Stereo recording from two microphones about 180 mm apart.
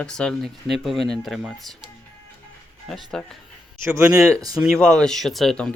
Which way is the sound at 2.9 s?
5° left (ahead or behind).